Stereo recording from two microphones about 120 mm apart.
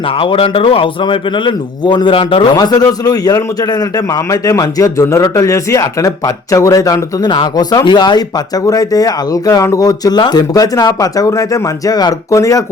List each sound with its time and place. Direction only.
0.2 s speech: 50° left (ahead or behind)
2.6 s a man's voice: 30° left (ahead or behind)